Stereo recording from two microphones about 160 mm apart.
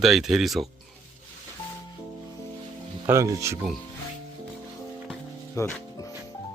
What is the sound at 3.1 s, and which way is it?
Speech, 20° right (ahead or behind).